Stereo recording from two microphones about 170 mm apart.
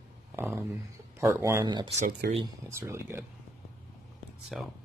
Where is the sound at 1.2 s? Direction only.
15° right (ahead or behind).